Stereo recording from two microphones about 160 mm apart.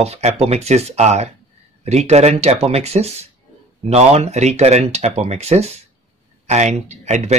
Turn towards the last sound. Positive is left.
turn(degrees=-45)  # may be behind; listen again after turning